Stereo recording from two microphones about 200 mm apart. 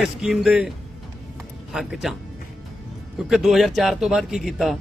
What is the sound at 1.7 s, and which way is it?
Speech, centre (ahead or behind).